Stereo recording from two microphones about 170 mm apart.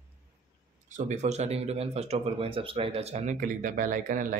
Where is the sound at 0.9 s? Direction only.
45° right (ahead or behind).